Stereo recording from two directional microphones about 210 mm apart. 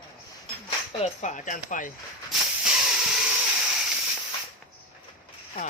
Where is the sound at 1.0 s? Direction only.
35° left (ahead or behind).